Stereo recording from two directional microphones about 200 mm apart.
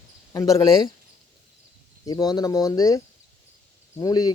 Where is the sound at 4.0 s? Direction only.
20° left (ahead or behind).